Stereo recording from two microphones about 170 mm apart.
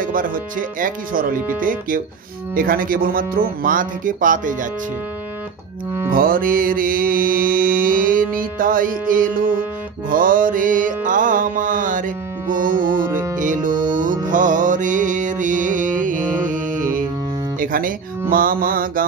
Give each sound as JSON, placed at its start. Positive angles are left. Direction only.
{"t": 0.0, "sound": "speech", "side_deg": -55}
{"t": 6.1, "sound": "music", "side_deg": -55}
{"t": 17.6, "sound": "guitar", "side_deg": -55}
{"t": 18.3, "sound": "speech", "side_deg": -55}